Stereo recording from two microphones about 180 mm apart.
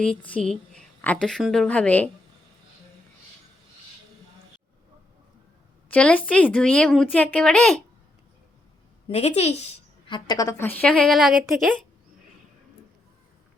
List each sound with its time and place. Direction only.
0.3 s speech: 5° left (ahead or behind)
5.9 s speech: 5° left (ahead or behind)
9.0 s a woman's voice: 35° left (ahead or behind)
10.1 s speech: 25° left (ahead or behind); by 11.9 s centre (ahead or behind)